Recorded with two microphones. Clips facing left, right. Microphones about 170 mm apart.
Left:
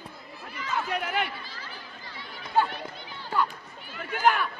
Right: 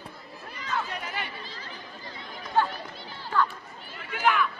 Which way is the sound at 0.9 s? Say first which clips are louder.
Left 6 dB; 65° left (ahead or behind).